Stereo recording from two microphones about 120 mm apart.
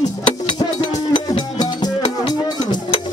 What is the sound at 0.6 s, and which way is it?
Music, 40° left (ahead or behind).